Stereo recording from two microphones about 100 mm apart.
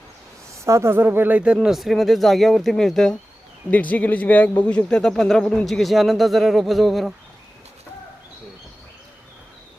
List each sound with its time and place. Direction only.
0.6 s speech: 25° right (ahead or behind)
1.5 s speech: centre (ahead or behind)
3.7 s speech: 15° left (ahead or behind); by 7.1 s centre (ahead or behind)